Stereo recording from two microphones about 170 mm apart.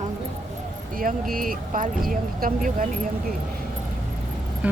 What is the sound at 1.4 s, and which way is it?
Speech, 55° right (ahead or behind).